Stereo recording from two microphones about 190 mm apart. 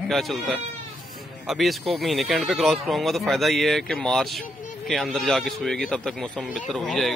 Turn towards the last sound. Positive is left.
turn(degrees=0)  # may be behind; listen again after turning